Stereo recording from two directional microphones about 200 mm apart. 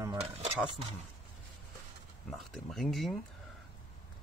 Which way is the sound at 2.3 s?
Centre (ahead or behind).